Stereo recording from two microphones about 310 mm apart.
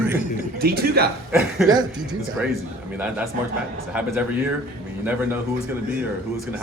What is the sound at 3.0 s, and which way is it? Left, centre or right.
Speech, centre.